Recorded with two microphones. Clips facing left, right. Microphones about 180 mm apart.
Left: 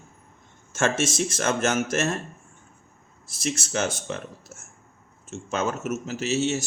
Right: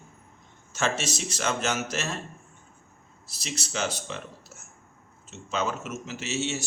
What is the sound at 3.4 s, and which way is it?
Speech, 50° left (ahead or behind).